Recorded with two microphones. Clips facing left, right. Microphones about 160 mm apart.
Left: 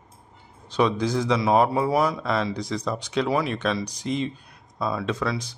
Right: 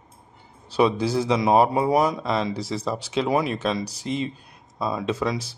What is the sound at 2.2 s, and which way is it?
Speech, centre (ahead or behind).